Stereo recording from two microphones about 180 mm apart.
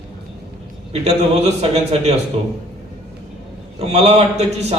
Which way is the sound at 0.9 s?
35° right (ahead or behind).